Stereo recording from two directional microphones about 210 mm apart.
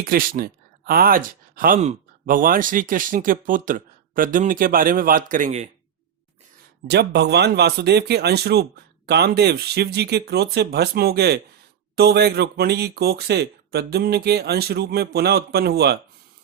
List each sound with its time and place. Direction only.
0.0 s speech: 45° right (ahead or behind)
6.8 s speech: 50° right (ahead or behind)